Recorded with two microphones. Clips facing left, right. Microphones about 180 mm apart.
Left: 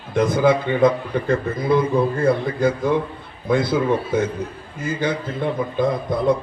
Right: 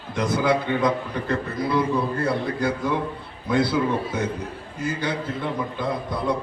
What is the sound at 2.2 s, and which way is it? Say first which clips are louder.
A man's voice: left 5 dB; 50° left (ahead or behind).